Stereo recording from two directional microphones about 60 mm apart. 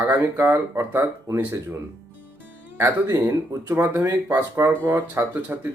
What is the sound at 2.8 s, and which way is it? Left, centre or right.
Speech, right.